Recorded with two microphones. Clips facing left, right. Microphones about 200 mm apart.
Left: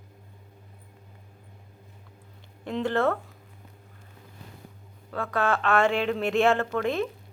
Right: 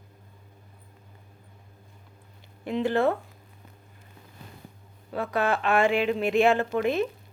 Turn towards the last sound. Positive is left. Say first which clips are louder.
# right 2 dB
turn(degrees=-5)  # may be behind; listen again after turning